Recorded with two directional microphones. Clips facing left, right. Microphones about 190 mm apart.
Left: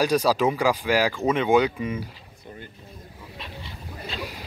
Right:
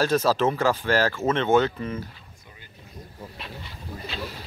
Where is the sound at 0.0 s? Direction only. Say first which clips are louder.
Left 1 dB; 10° left (ahead or behind).